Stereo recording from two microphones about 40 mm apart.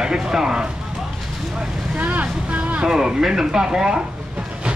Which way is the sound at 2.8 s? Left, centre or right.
Centre.